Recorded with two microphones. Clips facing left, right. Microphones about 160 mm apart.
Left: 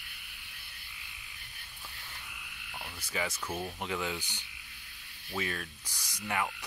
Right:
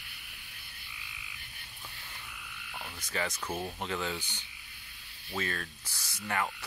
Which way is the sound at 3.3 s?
10° right (ahead or behind).